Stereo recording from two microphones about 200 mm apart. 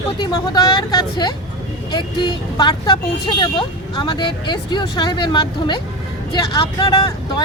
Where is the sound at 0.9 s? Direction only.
20° left (ahead or behind).